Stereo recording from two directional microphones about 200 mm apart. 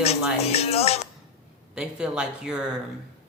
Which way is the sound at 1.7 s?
5° right (ahead or behind).